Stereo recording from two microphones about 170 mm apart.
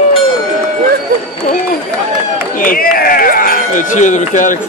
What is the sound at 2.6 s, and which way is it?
Speech, 60° left (ahead or behind).